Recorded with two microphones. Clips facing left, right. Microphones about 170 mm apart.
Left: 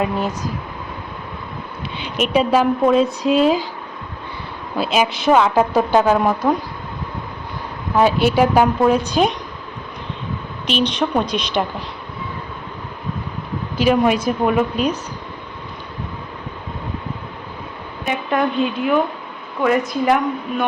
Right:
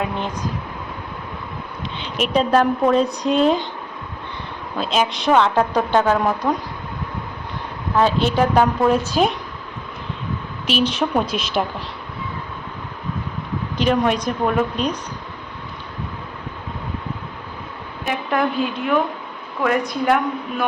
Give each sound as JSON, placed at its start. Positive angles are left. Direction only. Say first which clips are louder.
{"t": 0.0, "sound": "speech", "louder": "left 4 dB", "side_deg": 5}
{"t": 2.0, "sound": "a woman's voice", "louder": "left 2 dB", "side_deg": 5}
{"t": 4.8, "sound": "a woman's voice", "louder": "left 2 dB", "side_deg": 5}
{"t": 7.9, "sound": "a woman's voice", "louder": "left 3 dB", "side_deg": 10}
{"t": 10.7, "sound": "a woman's voice", "louder": "left 1 dB", "side_deg": -5}
{"t": 13.7, "sound": "a woman's voice", "louder": "left 3 dB", "side_deg": 5}
{"t": 18.0, "sound": "a woman's voice", "louder": "left 1 dB", "side_deg": 0}